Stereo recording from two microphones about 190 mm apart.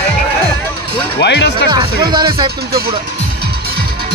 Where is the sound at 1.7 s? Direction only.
25° right (ahead or behind).